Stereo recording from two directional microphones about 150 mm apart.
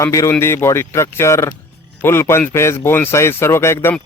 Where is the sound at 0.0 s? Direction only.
20° left (ahead or behind).